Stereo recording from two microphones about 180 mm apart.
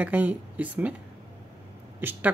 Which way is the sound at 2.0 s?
10° right (ahead or behind).